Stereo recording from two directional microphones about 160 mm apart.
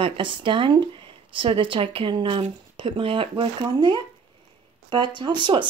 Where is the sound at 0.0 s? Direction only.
30° right (ahead or behind).